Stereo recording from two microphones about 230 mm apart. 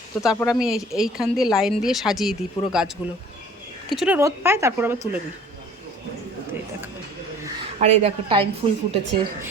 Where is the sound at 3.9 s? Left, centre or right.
Centre.